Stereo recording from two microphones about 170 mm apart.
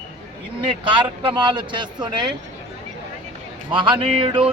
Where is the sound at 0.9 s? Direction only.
30° right (ahead or behind).